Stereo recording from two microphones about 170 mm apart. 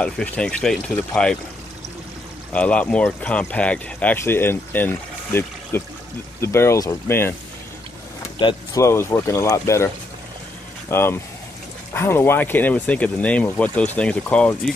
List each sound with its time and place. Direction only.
0.0 s speech: 5° left (ahead or behind)
2.5 s speech: 10° left (ahead or behind)
8.4 s speech: 25° left (ahead or behind)
8.8 s speech: 15° left (ahead or behind)
10.9 s speech: 15° left (ahead or behind)